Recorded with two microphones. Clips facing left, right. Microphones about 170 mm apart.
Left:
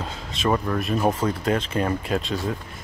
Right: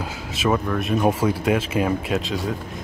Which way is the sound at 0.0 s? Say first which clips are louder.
Right 2 dB; 5° right (ahead or behind).